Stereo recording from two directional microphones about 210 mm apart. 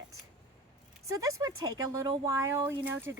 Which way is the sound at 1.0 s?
15° right (ahead or behind).